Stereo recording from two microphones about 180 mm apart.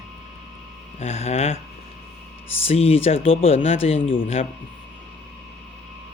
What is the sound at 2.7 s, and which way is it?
Speech, 35° left (ahead or behind).